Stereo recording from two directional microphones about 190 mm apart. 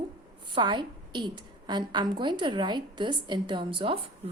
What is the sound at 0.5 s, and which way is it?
A woman's voice, 25° right (ahead or behind).